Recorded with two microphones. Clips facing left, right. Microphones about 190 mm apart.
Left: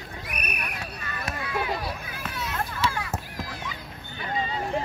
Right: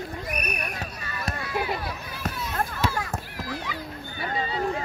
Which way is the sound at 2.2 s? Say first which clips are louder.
Right 3 dB; 45° right (ahead or behind).